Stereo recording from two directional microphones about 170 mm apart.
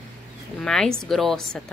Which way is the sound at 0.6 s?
5° left (ahead or behind).